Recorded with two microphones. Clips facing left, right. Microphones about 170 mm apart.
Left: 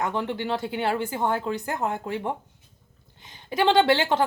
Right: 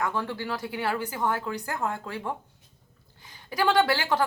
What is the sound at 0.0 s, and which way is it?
Speech, 20° left (ahead or behind).